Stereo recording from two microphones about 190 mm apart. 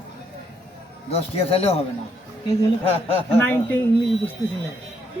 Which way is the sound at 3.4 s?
10° left (ahead or behind).